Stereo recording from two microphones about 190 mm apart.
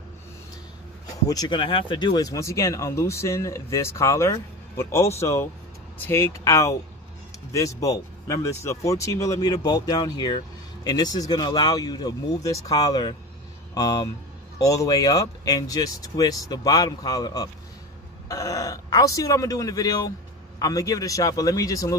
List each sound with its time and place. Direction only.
1.2 s speech: 20° left (ahead or behind)